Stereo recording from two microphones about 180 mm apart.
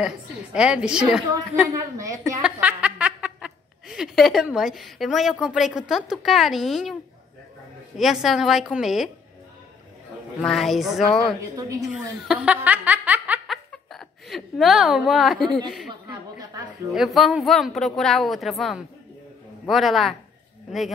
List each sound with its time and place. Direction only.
0.0 s speech: 5° right (ahead or behind)
1.2 s a woman's voice: 20° right (ahead or behind)
2.4 s speech: 5° right (ahead or behind)
8.0 s speech: centre (ahead or behind)
10.4 s a woman's voice: centre (ahead or behind)
16.3 s a sound: 20° right (ahead or behind)
16.9 s speech: centre (ahead or behind)